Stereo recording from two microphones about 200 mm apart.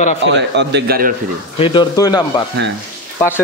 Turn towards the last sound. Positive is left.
turn(degrees=10)  # may be behind; listen again after turning